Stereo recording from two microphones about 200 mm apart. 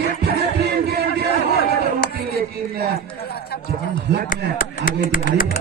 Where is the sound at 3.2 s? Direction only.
50° left (ahead or behind).